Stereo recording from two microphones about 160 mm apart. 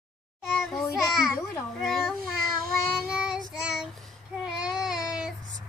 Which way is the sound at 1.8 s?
Centre (ahead or behind).